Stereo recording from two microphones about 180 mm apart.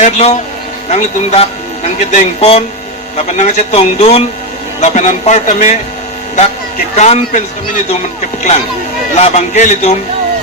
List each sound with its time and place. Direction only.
0.0 s speech: 35° left (ahead or behind)
6.9 s speech: 40° left (ahead or behind)
9.1 s speech: 40° left (ahead or behind)